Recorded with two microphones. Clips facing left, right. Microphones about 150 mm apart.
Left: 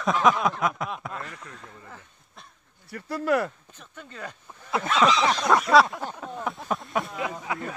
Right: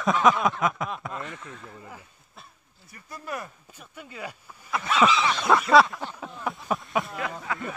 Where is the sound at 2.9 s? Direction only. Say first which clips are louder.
Left 12 dB; 70° left (ahead or behind).